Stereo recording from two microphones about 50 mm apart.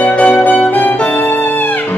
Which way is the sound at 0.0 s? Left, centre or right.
Left.